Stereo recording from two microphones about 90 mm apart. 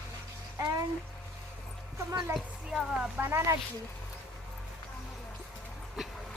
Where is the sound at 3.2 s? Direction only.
30° right (ahead or behind).